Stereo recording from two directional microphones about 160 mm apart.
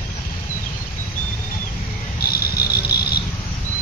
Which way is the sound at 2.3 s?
75° left (ahead or behind).